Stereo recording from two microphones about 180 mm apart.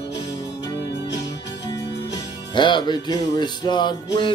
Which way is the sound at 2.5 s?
25° left (ahead or behind).